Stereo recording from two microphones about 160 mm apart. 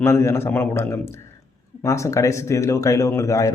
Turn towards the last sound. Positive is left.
turn(degrees=20)  # may be behind; listen again after turning